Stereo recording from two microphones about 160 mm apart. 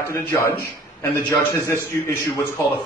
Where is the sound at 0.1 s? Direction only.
20° left (ahead or behind).